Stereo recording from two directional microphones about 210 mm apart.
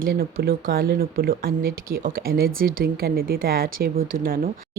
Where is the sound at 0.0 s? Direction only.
45° right (ahead or behind).